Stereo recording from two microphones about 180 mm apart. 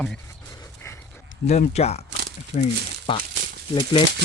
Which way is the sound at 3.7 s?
25° left (ahead or behind).